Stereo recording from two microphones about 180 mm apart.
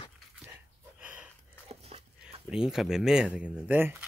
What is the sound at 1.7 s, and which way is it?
Dog, 35° right (ahead or behind).